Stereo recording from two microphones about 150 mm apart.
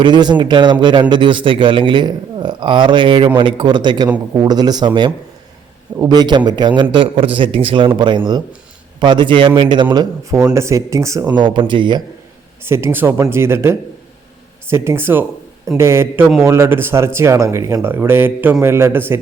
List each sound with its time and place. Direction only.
0.0 s speech: 30° right (ahead or behind)
11.4 s speech: 35° right (ahead or behind)
12.6 s speech: 15° right (ahead or behind)